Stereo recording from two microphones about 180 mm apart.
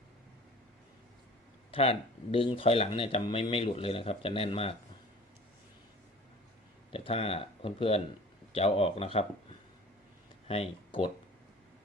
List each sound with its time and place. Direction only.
1.7 s speech: 30° left (ahead or behind)
6.9 s speech: 30° left (ahead or behind)